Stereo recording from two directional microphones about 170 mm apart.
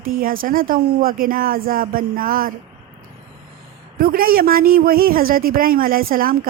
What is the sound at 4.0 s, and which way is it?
Speech, 60° right (ahead or behind).